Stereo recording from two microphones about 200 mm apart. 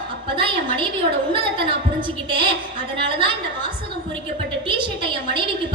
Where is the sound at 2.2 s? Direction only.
25° right (ahead or behind).